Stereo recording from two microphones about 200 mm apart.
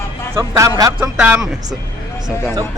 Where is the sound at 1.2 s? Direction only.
5° right (ahead or behind).